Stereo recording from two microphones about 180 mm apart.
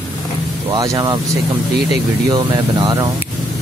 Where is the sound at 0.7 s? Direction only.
20° right (ahead or behind).